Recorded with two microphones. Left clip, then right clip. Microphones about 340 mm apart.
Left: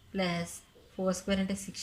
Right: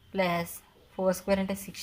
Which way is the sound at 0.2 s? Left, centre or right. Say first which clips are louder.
Right 5 dB; centre.